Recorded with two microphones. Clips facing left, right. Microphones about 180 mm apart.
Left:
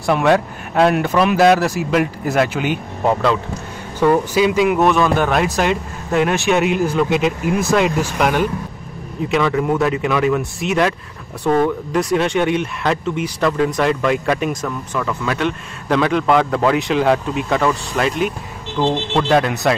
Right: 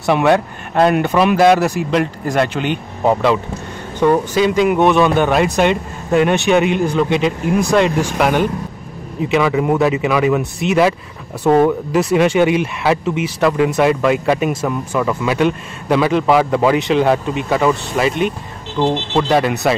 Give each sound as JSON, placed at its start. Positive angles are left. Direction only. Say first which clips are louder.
{"t": 0.0, "sound": "speech", "louder": "right 1 dB", "side_deg": 0}
{"t": 4.1, "sound": "speech", "louder": "even", "side_deg": 5}
{"t": 11.4, "sound": "speech", "louder": "right 4 dB", "side_deg": -30}
{"t": 11.9, "sound": "speech", "louder": "right 3 dB", "side_deg": -5}